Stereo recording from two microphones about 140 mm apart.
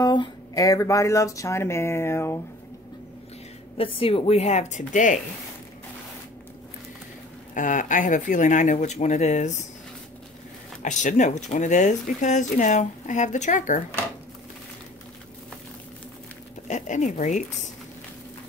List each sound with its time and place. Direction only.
0.0 s speech: 30° left (ahead or behind)
3.7 s speech: 40° left (ahead or behind); by 5.2 s 65° left (ahead or behind)
7.5 s speech: 65° left (ahead or behind)
10.8 s speech: 60° left (ahead or behind)
16.6 s speech: 60° left (ahead or behind)